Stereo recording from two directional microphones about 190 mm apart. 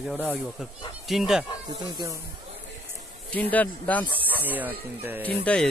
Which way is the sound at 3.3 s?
10° left (ahead or behind).